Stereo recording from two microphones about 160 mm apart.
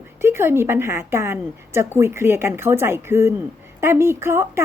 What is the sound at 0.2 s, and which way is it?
A woman's voice, 15° right (ahead or behind).